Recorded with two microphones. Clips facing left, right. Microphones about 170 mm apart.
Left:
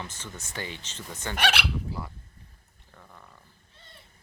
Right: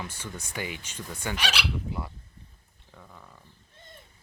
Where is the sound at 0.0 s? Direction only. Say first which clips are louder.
Right 2 dB; 10° right (ahead or behind).